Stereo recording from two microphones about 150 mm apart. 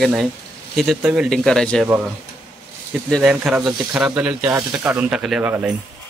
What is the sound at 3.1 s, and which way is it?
Speech, 5° right (ahead or behind).